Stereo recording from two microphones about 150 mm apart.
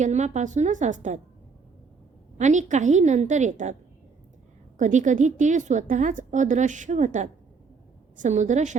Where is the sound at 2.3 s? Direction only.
50° right (ahead or behind).